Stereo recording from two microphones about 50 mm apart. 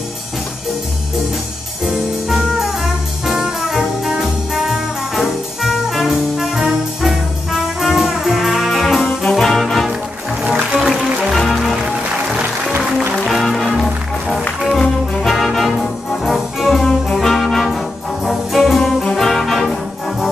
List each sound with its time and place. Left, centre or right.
1.9 s music: centre
7.8 s brass instrument: centre
10.4 s music: right
10.8 s music: centre
11.7 s music: centre
13.1 s music: centre
14.8 s brass instrument: centre